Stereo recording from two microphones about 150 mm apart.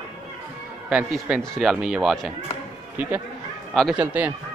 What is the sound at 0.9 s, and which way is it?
Speech, 5° right (ahead or behind).